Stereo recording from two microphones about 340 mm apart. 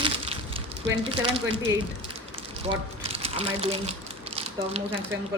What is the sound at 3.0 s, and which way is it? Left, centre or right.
Speech, centre.